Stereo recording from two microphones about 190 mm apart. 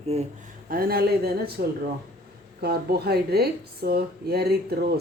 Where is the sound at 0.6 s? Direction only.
50° right (ahead or behind).